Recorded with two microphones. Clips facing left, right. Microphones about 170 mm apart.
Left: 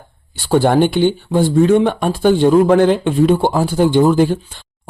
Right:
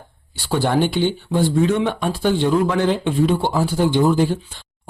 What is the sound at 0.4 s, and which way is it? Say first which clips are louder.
Speech: left 6 dB; 50° left (ahead or behind).